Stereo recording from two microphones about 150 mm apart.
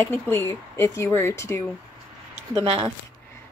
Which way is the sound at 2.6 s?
35° right (ahead or behind).